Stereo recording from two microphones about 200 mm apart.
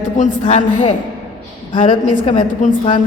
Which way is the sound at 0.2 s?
30° left (ahead or behind).